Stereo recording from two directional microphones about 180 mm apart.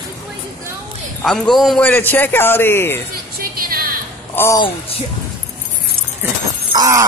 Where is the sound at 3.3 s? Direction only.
55° right (ahead or behind).